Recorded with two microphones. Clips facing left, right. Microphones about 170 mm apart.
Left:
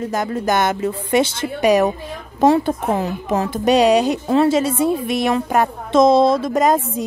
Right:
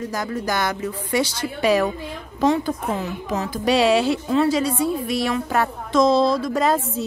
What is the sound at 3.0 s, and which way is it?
Speech, 50° left (ahead or behind).